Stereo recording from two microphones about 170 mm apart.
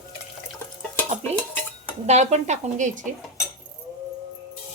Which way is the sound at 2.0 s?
40° right (ahead or behind).